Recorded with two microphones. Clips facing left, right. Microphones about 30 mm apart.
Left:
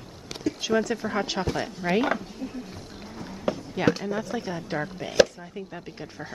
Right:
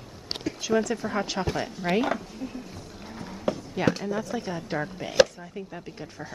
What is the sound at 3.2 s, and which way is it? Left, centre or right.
Speech, centre.